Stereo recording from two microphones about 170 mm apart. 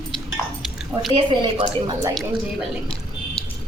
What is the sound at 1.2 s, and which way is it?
Speech, 30° right (ahead or behind).